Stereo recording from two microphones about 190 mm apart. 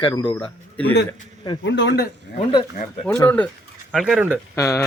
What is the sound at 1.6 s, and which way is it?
Speech, 70° left (ahead or behind).